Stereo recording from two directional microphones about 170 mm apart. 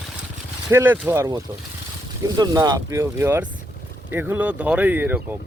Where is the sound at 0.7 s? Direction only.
15° right (ahead or behind).